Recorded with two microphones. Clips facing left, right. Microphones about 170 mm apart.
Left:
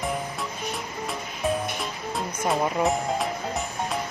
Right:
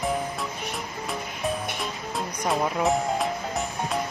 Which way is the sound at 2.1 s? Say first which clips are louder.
Left 1 dB; centre (ahead or behind).